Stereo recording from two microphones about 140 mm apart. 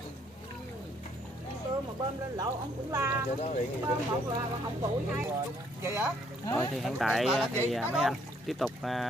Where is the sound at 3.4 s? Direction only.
55° left (ahead or behind).